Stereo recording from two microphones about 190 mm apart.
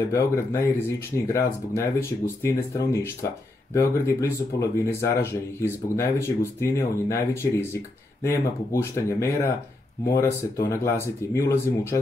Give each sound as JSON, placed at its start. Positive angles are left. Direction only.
{"t": 0.0, "sound": "speech", "side_deg": 15}
{"t": 11.3, "sound": "speech", "side_deg": 15}